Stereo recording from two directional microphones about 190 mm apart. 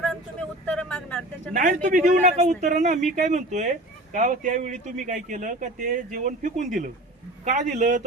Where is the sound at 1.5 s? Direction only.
45° right (ahead or behind).